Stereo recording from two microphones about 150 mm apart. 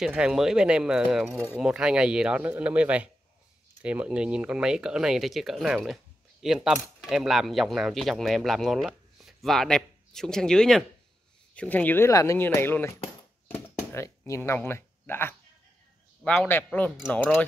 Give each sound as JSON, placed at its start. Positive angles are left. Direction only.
{"t": 0.0, "sound": "speech", "side_deg": -5}
{"t": 13.9, "sound": "speech", "side_deg": 20}